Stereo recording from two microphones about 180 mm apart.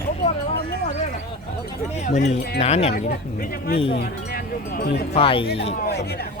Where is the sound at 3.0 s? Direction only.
50° left (ahead or behind).